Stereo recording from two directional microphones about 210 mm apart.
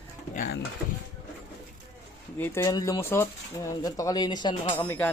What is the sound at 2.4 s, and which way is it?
Speech, 15° left (ahead or behind).